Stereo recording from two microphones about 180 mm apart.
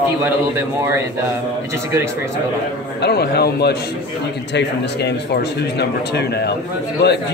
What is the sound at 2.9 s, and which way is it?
A man's voice, 65° left (ahead or behind).